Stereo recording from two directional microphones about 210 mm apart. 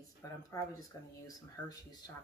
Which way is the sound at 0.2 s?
15° left (ahead or behind).